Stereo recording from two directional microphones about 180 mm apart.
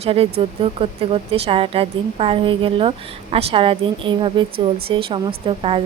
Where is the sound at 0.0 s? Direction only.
35° right (ahead or behind).